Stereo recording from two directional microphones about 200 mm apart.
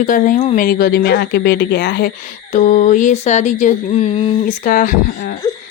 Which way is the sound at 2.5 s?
40° left (ahead or behind).